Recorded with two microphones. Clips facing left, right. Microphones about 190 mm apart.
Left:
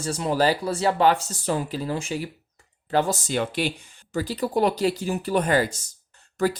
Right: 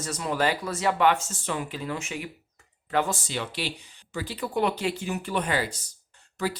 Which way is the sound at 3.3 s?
50° left (ahead or behind).